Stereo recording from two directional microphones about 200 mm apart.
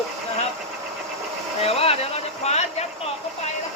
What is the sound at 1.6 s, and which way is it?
Speech, 30° left (ahead or behind).